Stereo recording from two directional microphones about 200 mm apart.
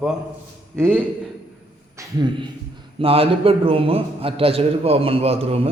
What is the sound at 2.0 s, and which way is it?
A man's voice, 20° right (ahead or behind).